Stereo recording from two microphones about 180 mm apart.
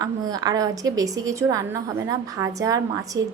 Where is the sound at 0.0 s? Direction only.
20° right (ahead or behind).